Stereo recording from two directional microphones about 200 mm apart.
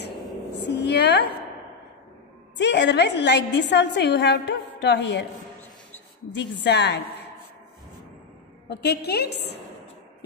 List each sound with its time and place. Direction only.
0.7 s a sound: 60° left (ahead or behind)
2.5 s a woman's voice: 60° left (ahead or behind)
6.3 s a woman's voice: 60° left (ahead or behind)
8.6 s a woman's voice: 55° left (ahead or behind)